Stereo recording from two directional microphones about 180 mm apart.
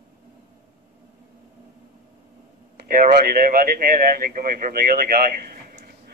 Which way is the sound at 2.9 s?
55° right (ahead or behind).